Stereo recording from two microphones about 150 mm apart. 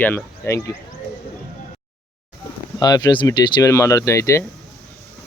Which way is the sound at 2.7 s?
25° left (ahead or behind).